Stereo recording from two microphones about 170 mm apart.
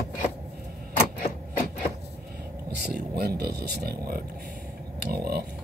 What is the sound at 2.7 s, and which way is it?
Speech, 65° right (ahead or behind).